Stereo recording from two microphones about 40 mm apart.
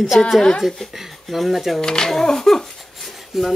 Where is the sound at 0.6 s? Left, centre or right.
Centre.